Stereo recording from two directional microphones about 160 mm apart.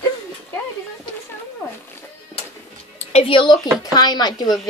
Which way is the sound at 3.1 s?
35° left (ahead or behind).